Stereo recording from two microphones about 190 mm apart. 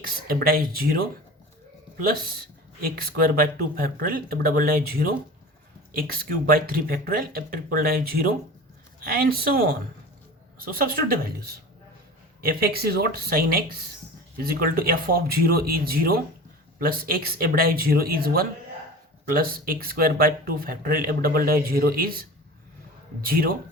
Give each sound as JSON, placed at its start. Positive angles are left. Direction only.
{"t": 0.3, "sound": "speech", "side_deg": -50}